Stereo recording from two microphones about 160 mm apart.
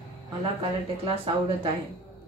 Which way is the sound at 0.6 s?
35° right (ahead or behind).